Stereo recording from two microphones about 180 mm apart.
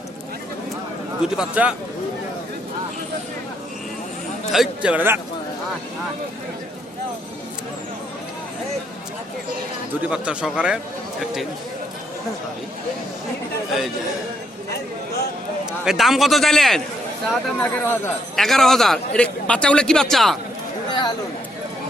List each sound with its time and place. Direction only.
1.4 s a man's voice: 5° right (ahead or behind)
4.5 s a man's voice: 5° right (ahead or behind)
9.9 s a man's voice: 5° right (ahead or behind)
15.8 s a man's voice: centre (ahead or behind)
17.6 s speech: 10° left (ahead or behind)
18.3 s a man's voice: centre (ahead or behind)
20.9 s chatter: 25° left (ahead or behind)